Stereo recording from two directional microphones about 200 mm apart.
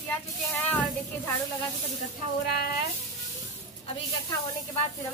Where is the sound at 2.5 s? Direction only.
45° left (ahead or behind).